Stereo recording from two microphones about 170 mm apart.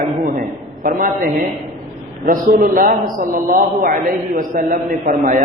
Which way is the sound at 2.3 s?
55° right (ahead or behind).